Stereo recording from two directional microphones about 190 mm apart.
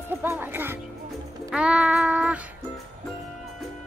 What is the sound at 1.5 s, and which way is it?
Child singing, 5° right (ahead or behind).